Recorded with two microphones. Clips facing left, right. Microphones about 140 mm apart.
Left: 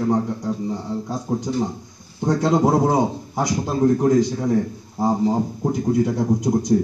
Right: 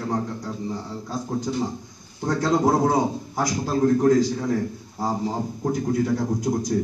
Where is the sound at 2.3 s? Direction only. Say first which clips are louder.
Left 3 dB; 20° left (ahead or behind).